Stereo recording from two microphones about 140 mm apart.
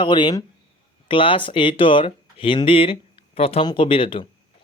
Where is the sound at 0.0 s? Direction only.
35° left (ahead or behind).